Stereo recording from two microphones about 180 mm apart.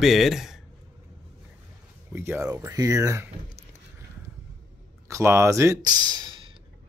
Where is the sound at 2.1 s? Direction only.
10° right (ahead or behind).